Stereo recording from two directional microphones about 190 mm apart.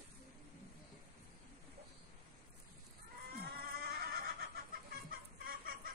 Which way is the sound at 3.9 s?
55° right (ahead or behind).